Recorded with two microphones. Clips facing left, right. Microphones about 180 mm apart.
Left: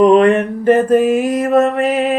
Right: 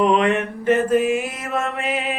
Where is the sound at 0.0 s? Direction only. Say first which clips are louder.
Left 8 dB; 40° left (ahead or behind).